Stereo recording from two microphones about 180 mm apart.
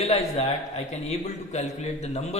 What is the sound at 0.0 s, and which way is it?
Speech, 35° left (ahead or behind).